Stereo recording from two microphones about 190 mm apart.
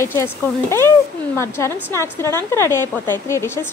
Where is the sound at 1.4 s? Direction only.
15° left (ahead or behind).